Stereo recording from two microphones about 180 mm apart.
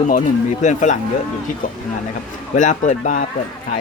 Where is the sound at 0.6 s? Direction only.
40° left (ahead or behind).